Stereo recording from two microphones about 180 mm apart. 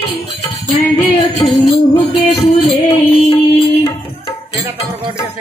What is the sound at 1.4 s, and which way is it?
Music, 30° left (ahead or behind).